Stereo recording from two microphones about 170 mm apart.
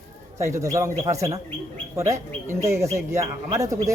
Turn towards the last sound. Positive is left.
turn(degrees=-20)  # may be behind; listen again after turning